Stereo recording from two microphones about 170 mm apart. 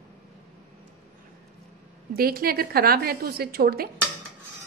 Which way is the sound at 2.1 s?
60° right (ahead or behind).